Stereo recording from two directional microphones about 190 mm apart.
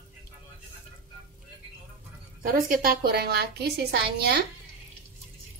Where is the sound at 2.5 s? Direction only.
50° right (ahead or behind).